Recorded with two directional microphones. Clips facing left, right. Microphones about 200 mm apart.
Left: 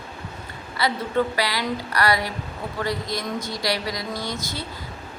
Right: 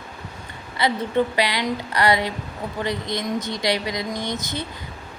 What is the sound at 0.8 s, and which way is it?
Speech, 20° right (ahead or behind).